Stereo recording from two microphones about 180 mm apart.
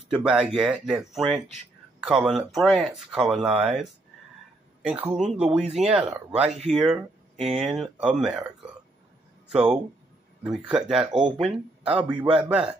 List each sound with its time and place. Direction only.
0.2 s speech: 5° right (ahead or behind)
4.8 s speech: 5° right (ahead or behind)
9.5 s speech: 5° right (ahead or behind)
11.1 s speech: 25° right (ahead or behind)
11.9 s speech: 5° right (ahead or behind)